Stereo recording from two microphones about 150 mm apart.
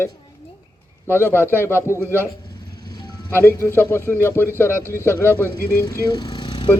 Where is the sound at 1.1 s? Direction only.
15° left (ahead or behind).